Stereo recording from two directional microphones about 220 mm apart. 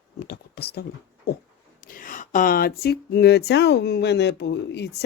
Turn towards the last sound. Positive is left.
turn(degrees=50)  # may be behind; listen again after turning